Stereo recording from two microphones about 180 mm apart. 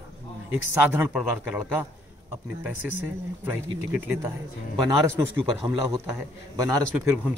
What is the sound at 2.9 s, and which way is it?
A man's voice, 10° right (ahead or behind).